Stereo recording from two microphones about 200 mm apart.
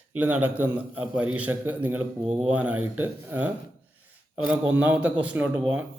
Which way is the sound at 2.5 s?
10° right (ahead or behind).